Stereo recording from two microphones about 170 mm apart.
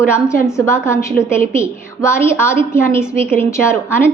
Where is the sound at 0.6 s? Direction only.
15° left (ahead or behind).